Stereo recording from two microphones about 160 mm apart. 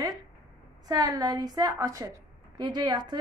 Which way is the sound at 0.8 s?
25° right (ahead or behind).